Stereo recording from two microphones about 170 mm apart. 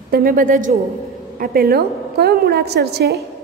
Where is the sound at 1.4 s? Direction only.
65° right (ahead or behind).